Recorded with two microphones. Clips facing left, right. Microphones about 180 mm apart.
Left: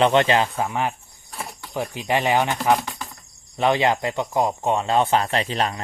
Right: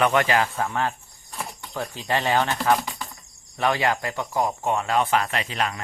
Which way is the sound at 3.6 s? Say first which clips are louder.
Left 4 dB; 20° left (ahead or behind).